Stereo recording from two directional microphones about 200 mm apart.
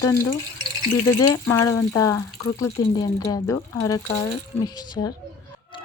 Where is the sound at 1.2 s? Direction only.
15° left (ahead or behind).